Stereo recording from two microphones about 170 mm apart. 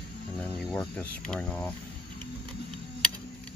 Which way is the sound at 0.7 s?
5° left (ahead or behind).